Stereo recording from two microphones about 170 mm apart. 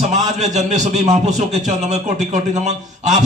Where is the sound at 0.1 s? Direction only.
40° right (ahead or behind).